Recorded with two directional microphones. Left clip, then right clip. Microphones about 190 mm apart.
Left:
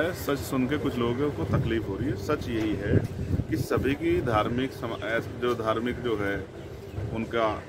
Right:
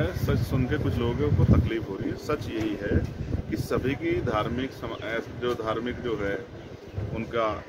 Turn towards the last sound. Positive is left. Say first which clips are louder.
# left 1 dB
turn(degrees=15)  # may be behind; listen again after turning